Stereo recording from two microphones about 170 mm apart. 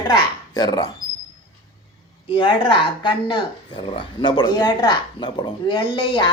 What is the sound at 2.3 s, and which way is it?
Speech, 30° left (ahead or behind).